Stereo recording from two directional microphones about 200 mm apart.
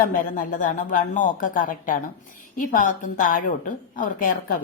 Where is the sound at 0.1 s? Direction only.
45° left (ahead or behind).